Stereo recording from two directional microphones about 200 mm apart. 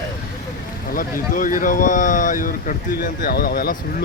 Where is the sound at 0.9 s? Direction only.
40° left (ahead or behind).